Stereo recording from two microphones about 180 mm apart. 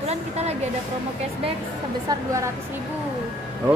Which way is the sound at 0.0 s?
35° right (ahead or behind).